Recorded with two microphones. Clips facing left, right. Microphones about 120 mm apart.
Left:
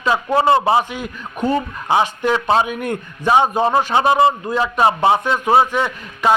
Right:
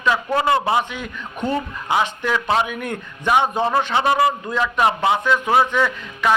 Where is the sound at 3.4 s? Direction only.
15° left (ahead or behind).